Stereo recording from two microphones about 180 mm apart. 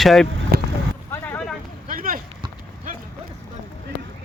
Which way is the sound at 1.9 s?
50° right (ahead or behind).